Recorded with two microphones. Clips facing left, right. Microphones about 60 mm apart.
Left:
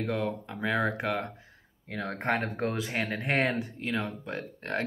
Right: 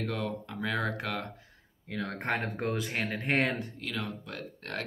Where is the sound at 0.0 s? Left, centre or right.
Centre.